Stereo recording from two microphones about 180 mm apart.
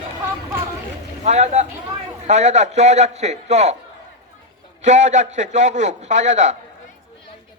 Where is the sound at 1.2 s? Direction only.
40° right (ahead or behind).